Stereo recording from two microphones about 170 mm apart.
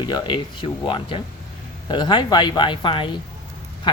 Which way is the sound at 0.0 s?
25° left (ahead or behind).